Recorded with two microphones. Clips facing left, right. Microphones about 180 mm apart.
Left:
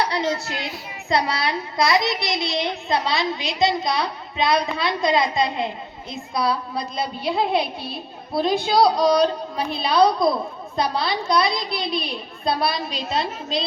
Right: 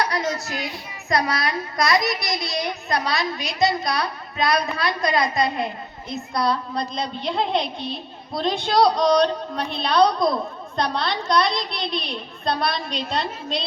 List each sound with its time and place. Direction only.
0.0 s a sound: 25° left (ahead or behind)
0.4 s a woman's voice: 25° left (ahead or behind)
6.3 s a woman's voice: 5° left (ahead or behind)